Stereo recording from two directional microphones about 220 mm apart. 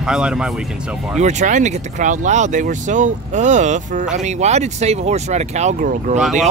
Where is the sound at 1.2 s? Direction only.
35° right (ahead or behind).